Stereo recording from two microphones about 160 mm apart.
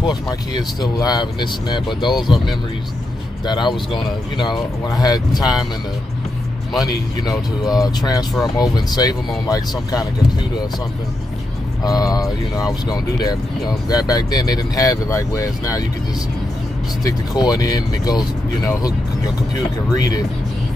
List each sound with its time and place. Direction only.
0.0 s speech: 25° left (ahead or behind)
3.4 s speech: 30° left (ahead or behind)
7.2 s speech: 25° left (ahead or behind)
11.8 s speech: 25° left (ahead or behind)
17.0 s speech: 25° left (ahead or behind)